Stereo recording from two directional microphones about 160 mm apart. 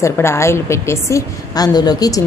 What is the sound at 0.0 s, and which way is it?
A woman's voice, 15° left (ahead or behind).